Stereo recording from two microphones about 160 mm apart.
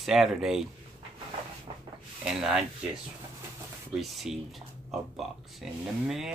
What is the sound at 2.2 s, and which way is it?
Speech, 5° right (ahead or behind).